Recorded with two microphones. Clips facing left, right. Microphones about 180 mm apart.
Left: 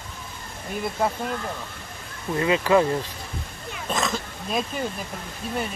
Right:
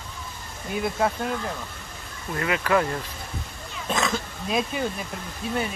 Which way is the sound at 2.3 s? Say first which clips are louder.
Left 4 dB; 25° left (ahead or behind).